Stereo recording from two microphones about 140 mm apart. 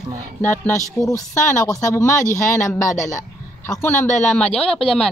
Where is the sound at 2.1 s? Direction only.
65° left (ahead or behind).